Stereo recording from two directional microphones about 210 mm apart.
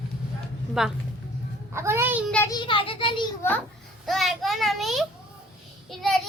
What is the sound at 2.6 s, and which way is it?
Speech, 25° left (ahead or behind).